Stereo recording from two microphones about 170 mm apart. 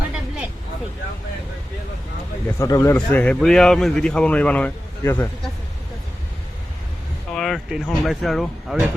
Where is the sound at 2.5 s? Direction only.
20° left (ahead or behind).